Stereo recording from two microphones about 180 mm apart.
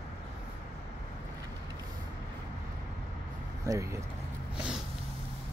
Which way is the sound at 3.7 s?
15° right (ahead or behind).